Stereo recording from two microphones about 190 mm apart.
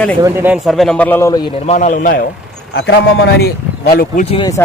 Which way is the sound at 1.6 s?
35° left (ahead or behind).